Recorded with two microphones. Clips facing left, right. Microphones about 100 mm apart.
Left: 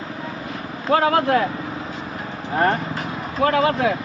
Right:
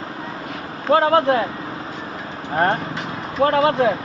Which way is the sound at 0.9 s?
30° right (ahead or behind).